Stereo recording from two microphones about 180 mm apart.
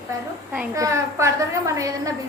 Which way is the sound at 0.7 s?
15° right (ahead or behind).